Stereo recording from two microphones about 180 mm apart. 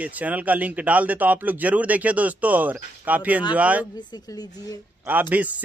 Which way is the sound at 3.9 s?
20° left (ahead or behind).